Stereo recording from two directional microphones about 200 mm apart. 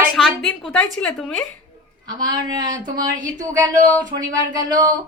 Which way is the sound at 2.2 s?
20° right (ahead or behind).